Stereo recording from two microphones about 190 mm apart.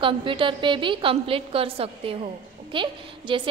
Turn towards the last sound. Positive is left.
turn(degrees=-25)  # may be behind; listen again after turning